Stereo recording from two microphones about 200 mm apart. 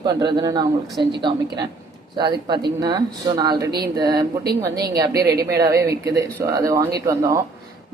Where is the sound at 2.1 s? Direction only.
20° right (ahead or behind).